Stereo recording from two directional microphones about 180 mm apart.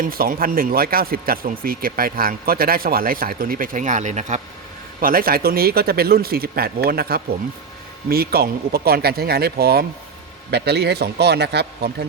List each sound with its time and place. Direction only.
0.0 s speech: 55° right (ahead or behind)
4.9 s a man's voice: 55° right (ahead or behind)